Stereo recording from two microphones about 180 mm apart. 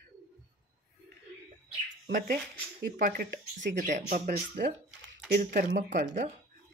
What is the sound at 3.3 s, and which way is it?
Speech, 85° right.